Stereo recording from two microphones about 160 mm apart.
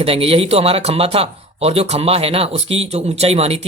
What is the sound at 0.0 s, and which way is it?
Speech, 35° right (ahead or behind).